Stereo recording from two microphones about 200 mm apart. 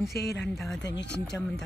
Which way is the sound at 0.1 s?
55° left (ahead or behind).